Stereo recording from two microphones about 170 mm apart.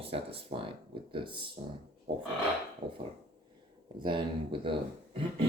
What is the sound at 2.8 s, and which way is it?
Dishes, 45° right (ahead or behind).